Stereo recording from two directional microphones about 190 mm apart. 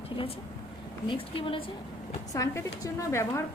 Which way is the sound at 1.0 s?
30° left (ahead or behind).